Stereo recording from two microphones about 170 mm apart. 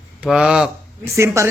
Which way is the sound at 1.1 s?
15° right (ahead or behind).